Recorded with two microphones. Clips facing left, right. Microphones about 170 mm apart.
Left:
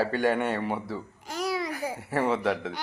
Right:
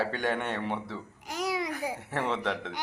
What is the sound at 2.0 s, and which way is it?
Speech, 5° left (ahead or behind).